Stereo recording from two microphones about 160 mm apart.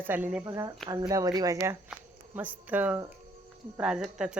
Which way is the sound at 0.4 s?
25° right (ahead or behind).